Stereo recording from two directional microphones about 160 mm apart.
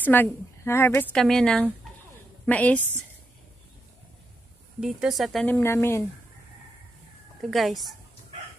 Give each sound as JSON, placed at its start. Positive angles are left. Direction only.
{"t": 0.0, "sound": "a woman's voice", "side_deg": 10}
{"t": 1.1, "sound": "speech", "side_deg": 5}
{"t": 4.7, "sound": "speech", "side_deg": -5}
{"t": 5.5, "sound": "speech", "side_deg": 15}
{"t": 7.5, "sound": "speech", "side_deg": 0}